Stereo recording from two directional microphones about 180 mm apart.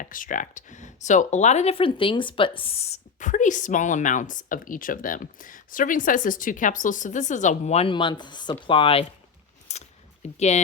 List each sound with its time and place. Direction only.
0.0 s speech: 50° left (ahead or behind); by 9.0 s 30° left (ahead or behind)
9.7 s scissors: 40° left (ahead or behind)
10.2 s speech: 40° left (ahead or behind)